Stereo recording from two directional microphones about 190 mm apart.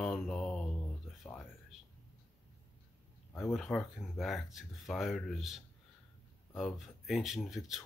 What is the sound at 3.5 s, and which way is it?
Speech, centre (ahead or behind).